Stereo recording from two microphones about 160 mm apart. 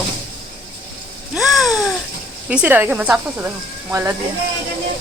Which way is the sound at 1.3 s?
Centre (ahead or behind).